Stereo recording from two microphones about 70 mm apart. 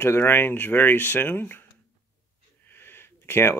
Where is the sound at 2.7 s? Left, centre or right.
Left.